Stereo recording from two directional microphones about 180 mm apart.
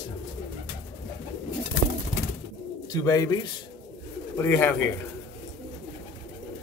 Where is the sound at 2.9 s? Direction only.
20° left (ahead or behind).